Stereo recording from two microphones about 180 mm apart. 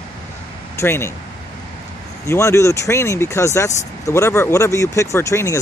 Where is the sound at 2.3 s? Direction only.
15° left (ahead or behind).